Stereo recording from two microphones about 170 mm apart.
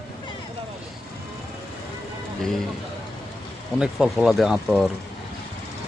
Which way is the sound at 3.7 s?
5° right (ahead or behind).